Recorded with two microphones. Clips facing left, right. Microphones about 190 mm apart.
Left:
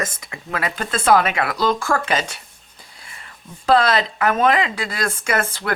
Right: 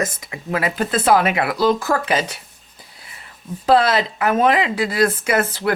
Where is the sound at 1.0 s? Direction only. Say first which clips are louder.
Even; 10° right (ahead or behind).